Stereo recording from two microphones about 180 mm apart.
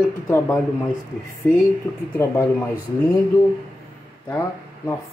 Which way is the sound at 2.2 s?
15° left (ahead or behind).